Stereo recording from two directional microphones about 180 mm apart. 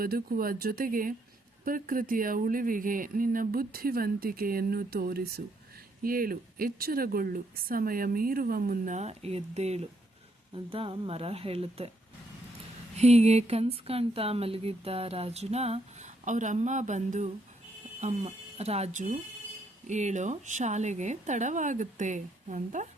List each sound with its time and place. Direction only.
0.0 s a woman's voice: 55° right (ahead or behind); by 11.9 s 35° right (ahead or behind)
13.0 s speech: 35° right (ahead or behind)